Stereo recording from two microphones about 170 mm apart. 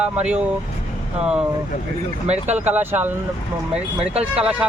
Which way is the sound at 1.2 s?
5° right (ahead or behind).